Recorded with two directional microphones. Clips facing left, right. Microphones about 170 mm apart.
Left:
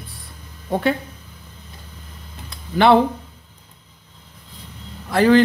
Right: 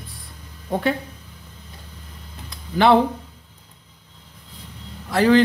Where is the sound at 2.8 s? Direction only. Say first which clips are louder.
Left 1 dB; 65° left (ahead or behind).